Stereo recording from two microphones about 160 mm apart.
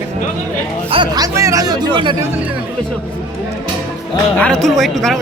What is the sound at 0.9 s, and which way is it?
Speech, 25° right (ahead or behind).